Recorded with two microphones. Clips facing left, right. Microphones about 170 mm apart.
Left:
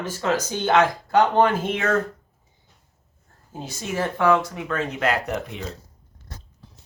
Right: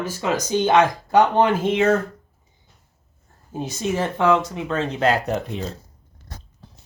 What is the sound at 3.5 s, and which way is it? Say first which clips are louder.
Speech: right 6 dB; 20° right (ahead or behind).